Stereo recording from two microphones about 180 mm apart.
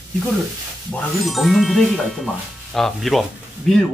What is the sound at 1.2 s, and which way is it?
Speech, centre (ahead or behind).